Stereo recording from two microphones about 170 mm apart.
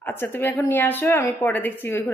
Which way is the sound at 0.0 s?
10° left (ahead or behind).